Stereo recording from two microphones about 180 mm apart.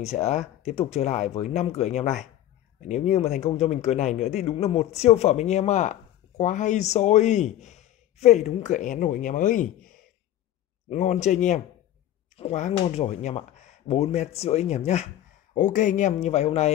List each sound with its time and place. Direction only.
0.0 s speech: 40° left (ahead or behind)